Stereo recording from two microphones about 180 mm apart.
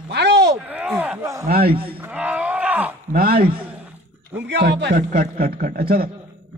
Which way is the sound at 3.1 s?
55° right (ahead or behind).